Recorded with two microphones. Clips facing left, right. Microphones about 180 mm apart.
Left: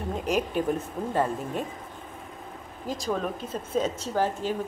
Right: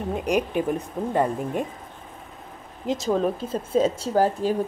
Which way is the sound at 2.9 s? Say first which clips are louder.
Right 6 dB; 25° right (ahead or behind).